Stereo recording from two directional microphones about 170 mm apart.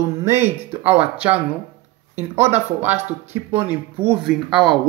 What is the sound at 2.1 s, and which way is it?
Speech, 15° right (ahead or behind).